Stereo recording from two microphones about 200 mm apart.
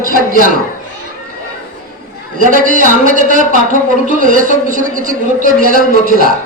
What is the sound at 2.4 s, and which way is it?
Speech, 40° right (ahead or behind).